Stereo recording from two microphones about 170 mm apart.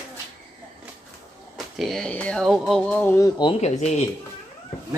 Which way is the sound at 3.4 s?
35° left (ahead or behind).